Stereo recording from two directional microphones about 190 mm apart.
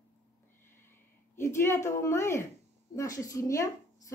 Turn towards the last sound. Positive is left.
turn(degrees=15)  # may be behind; listen again after turning